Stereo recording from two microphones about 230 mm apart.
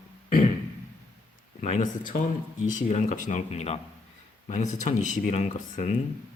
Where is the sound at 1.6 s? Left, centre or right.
Left.